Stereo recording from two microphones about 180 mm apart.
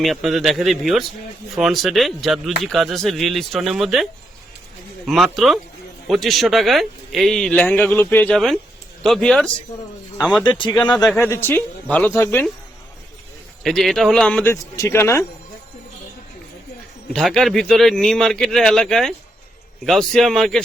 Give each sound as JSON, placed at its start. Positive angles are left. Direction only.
{"t": 0.0, "sound": "a man's voice", "side_deg": 0}
{"t": 10.4, "sound": "speech", "side_deg": 25}
{"t": 10.9, "sound": "a man's voice", "side_deg": 0}
{"t": 11.2, "sound": "speech", "side_deg": 15}
{"t": 13.7, "sound": "speech", "side_deg": 0}
{"t": 17.1, "sound": "a man's voice", "side_deg": 5}